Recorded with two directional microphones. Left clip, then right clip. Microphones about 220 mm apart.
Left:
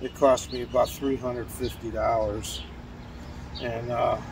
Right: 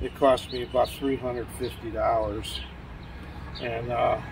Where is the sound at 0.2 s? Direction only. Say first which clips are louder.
Left 1 dB; 25° left (ahead or behind).